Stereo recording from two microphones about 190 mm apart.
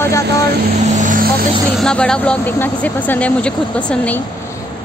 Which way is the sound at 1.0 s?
45° right (ahead or behind).